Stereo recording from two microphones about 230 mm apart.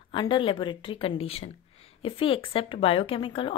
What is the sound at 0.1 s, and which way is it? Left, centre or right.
A woman's voice, centre.